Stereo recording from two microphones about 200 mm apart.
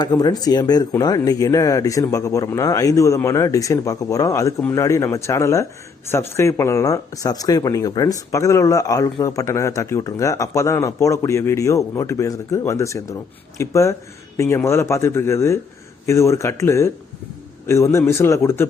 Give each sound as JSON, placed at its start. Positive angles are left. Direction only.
{"t": 0.0, "sound": "speech", "side_deg": 20}